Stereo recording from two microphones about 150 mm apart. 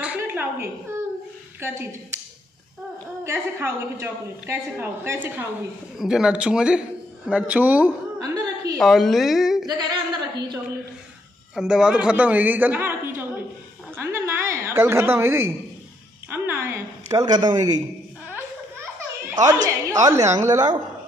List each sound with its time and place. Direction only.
0.0 s a sound: 10° right (ahead or behind)
1.6 s a woman's voice: 15° right (ahead or behind)
3.3 s a woman's voice: 15° right (ahead or behind)
5.9 s a woman's voice: 5° right (ahead or behind)
8.2 s chuckle: 25° right (ahead or behind)
8.7 s a woman's voice: centre (ahead or behind)
9.7 s a man's voice: 30° right (ahead or behind)
11.5 s a woman's voice: 5° right (ahead or behind)
13.9 s a sound: 15° right (ahead or behind)
16.3 s music: 15° right (ahead or behind)
17.1 s a man's voice: 25° right (ahead or behind)
18.2 s a sound: 15° right (ahead or behind)